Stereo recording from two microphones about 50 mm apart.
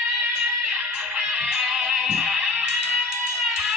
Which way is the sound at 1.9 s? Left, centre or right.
Centre.